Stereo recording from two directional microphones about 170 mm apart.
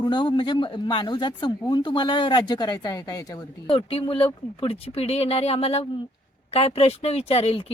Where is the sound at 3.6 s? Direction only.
35° left (ahead or behind).